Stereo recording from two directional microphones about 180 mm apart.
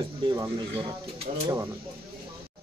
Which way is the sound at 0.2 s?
25° right (ahead or behind).